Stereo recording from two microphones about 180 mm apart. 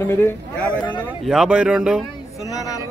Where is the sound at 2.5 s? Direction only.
20° left (ahead or behind).